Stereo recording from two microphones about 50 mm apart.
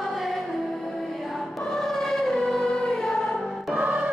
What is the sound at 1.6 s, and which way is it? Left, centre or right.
Music, centre.